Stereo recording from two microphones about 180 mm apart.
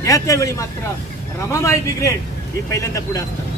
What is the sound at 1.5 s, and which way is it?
Speech, 15° left (ahead or behind).